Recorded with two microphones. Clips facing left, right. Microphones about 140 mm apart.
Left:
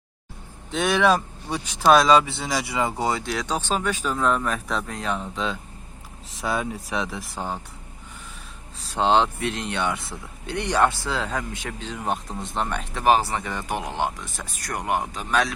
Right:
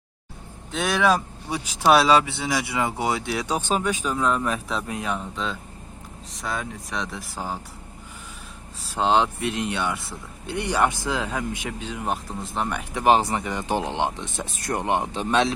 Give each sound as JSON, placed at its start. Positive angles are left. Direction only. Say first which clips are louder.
{"t": 0.7, "sound": "speech", "louder": "left 1 dB", "side_deg": 0}
{"t": 9.0, "sound": "speech", "louder": "left 1 dB", "side_deg": -5}
{"t": 12.9, "sound": "speech", "louder": "right 1 dB", "side_deg": -20}
{"t": 13.7, "sound": "speech", "louder": "right 2 dB", "side_deg": -25}